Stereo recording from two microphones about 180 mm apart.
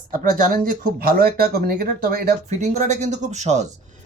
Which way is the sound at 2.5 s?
40° right (ahead or behind).